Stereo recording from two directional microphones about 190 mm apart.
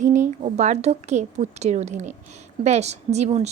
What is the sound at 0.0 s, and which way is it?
Speech, 40° right (ahead or behind).